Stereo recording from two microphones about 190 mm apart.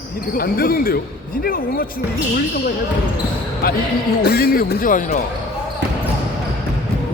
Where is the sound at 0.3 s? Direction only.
50° left (ahead or behind).